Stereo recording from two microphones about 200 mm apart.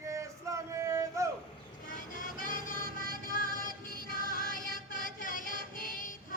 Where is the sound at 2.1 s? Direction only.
45° left (ahead or behind).